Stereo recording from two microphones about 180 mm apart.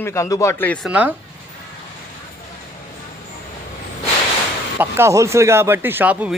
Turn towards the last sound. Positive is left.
turn(degrees=-10)  # may be behind; listen again after turning